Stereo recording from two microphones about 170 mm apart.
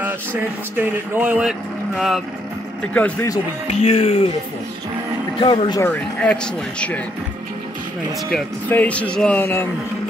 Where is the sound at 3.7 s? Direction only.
40° left (ahead or behind).